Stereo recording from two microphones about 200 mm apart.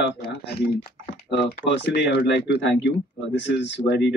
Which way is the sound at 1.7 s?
60° left (ahead or behind).